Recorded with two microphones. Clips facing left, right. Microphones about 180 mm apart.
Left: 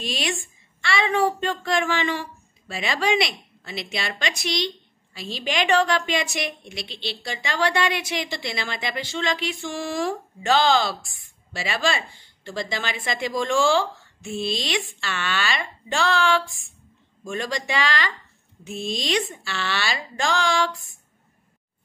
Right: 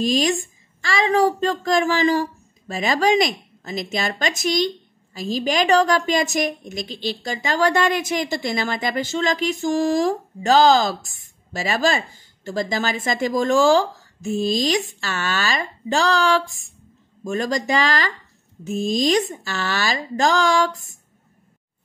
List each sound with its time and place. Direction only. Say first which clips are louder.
0.0 s a woman's voice: right 9 dB; 40° right (ahead or behind)